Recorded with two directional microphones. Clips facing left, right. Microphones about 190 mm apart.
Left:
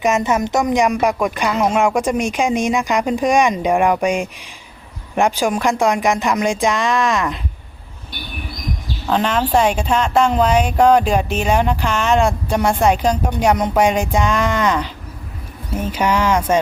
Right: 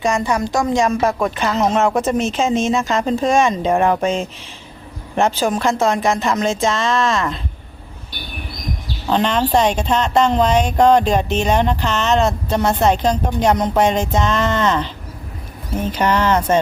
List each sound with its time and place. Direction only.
0.0 s a woman's voice: 20° left (ahead or behind)
9.0 s a woman's voice: 5° left (ahead or behind)